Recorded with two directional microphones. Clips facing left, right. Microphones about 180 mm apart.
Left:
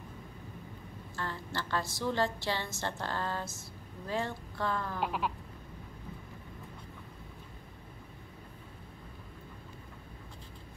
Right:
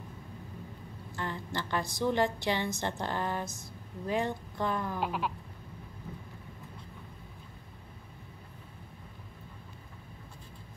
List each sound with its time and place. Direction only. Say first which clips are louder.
1.1 s a woman's voice: right 2 dB; 15° right (ahead or behind)
5.0 s sheep: left 2 dB; centre (ahead or behind)